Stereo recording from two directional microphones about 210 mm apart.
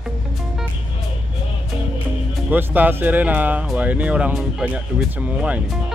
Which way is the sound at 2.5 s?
10° right (ahead or behind).